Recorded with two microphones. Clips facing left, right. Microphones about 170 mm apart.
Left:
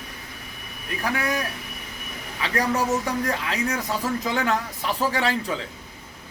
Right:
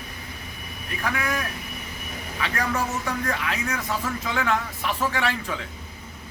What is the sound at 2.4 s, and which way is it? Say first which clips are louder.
Speech: left 4 dB; 35° left (ahead or behind).